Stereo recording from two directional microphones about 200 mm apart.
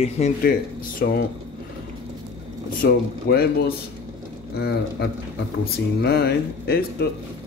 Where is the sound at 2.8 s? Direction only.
50° left (ahead or behind).